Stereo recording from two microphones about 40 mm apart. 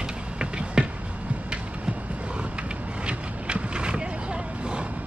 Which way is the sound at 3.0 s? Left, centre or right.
Right.